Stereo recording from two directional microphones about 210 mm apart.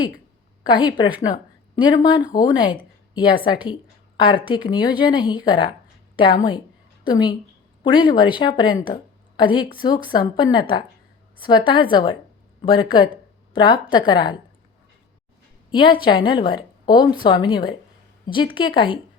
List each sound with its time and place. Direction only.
0.6 s a woman's voice: 20° left (ahead or behind)
15.7 s a woman's voice: 25° left (ahead or behind)